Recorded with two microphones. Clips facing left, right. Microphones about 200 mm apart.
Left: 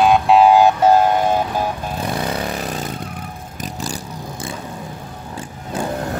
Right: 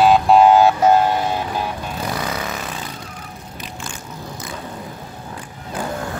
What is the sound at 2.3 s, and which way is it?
Vehicle, 35° left (ahead or behind).